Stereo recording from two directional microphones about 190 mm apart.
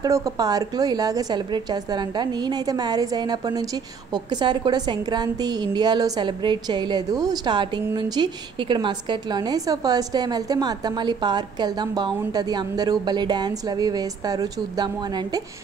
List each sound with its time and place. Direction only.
0.0 s a woman's voice: 20° right (ahead or behind)